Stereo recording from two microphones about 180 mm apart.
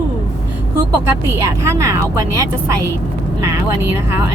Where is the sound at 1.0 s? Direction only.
15° right (ahead or behind).